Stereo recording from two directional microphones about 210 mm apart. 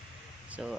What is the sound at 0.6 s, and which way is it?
Speech, centre (ahead or behind).